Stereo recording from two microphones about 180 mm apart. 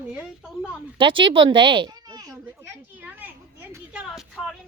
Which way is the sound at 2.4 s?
10° right (ahead or behind).